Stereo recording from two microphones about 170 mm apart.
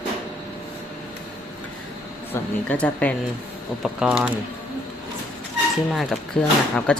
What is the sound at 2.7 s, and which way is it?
Speech, 10° left (ahead or behind).